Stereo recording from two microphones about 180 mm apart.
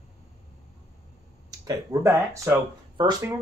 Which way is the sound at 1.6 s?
20° right (ahead or behind).